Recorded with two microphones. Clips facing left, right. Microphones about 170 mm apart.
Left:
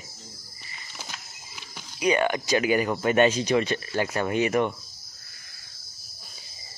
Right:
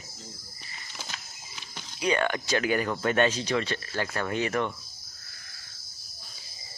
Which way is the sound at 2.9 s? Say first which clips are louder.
Left 5 dB; 15° left (ahead or behind).